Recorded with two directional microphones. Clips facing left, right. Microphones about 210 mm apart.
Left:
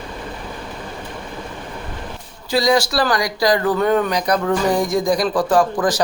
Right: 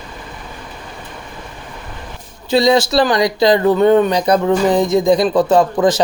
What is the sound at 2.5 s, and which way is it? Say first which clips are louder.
Speech: right 4 dB; 25° right (ahead or behind).